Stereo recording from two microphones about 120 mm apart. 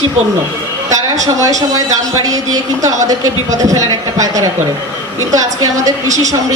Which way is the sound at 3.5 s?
30° right (ahead or behind).